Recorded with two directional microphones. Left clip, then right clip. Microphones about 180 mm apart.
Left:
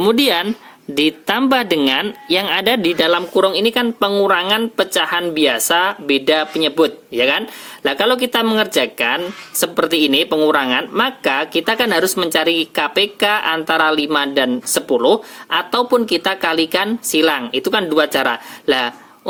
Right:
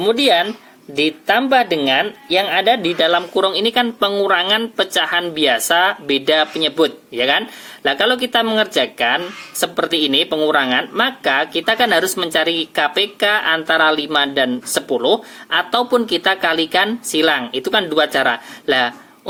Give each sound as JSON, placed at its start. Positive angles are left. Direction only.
{"t": 0.0, "sound": "speech", "side_deg": 55}